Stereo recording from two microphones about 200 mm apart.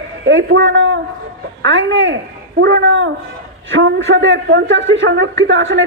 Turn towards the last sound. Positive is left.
turn(degrees=-70)  # may be behind; listen again after turning